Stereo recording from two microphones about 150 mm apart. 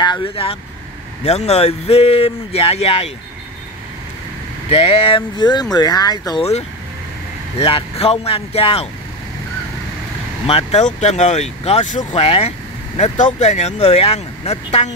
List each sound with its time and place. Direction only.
0.0 s speech: 30° left (ahead or behind)
4.6 s speech: 40° left (ahead or behind); by 6.4 s 25° left (ahead or behind)
7.5 s speech: 40° left (ahead or behind)
10.4 s speech: 45° left (ahead or behind)